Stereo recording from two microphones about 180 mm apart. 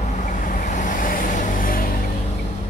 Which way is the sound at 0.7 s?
45° left (ahead or behind).